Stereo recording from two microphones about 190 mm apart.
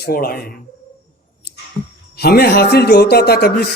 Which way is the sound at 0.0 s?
50° left (ahead or behind).